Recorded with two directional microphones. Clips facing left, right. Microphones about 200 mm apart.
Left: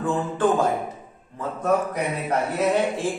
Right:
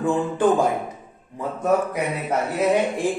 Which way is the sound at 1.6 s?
5° right (ahead or behind).